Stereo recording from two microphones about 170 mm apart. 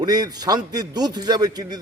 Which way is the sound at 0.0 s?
25° right (ahead or behind).